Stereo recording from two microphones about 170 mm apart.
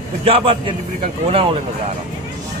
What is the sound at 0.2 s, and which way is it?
Speech, 35° right (ahead or behind).